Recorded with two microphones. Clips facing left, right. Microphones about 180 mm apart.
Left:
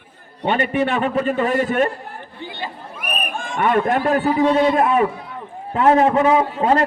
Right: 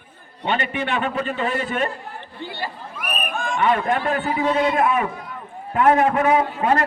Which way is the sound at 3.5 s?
50° left (ahead or behind).